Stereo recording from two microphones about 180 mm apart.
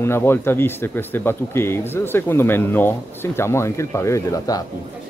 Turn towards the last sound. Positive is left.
turn(degrees=20)  # may be behind; listen again after turning